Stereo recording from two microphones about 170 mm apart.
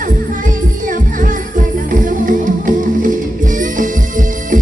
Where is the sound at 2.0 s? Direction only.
50° right (ahead or behind).